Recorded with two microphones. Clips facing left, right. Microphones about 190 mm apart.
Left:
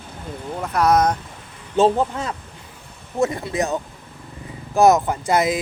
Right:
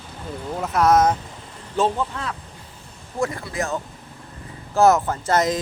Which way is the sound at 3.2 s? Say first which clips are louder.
Left 4 dB; 20° left (ahead or behind).